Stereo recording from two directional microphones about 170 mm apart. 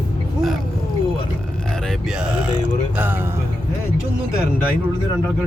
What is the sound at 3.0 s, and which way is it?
Speech, 10° right (ahead or behind).